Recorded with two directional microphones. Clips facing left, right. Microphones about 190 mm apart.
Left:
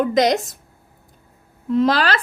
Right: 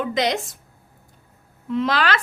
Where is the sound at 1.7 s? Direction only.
40° left (ahead or behind).